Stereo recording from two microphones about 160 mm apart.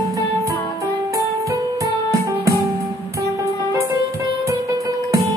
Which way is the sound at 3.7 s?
20° right (ahead or behind).